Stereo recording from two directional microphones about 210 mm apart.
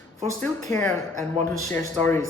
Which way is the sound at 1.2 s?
15° left (ahead or behind).